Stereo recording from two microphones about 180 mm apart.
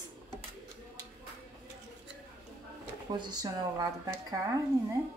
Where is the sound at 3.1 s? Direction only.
25° right (ahead or behind).